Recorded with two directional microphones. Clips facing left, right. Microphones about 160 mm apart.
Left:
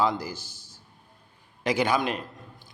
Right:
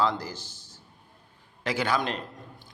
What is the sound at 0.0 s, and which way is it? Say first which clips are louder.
A man's voice: left 1 dB; 10° left (ahead or behind).